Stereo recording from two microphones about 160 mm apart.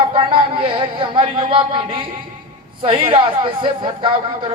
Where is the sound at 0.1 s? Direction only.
30° right (ahead or behind).